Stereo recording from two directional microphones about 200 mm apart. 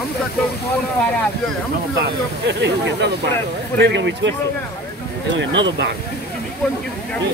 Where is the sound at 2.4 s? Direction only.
60° right (ahead or behind).